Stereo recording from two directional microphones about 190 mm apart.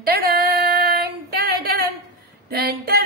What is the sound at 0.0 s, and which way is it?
Female singing, 55° right (ahead or behind).